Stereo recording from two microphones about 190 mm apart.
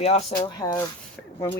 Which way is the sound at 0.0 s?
35° left (ahead or behind).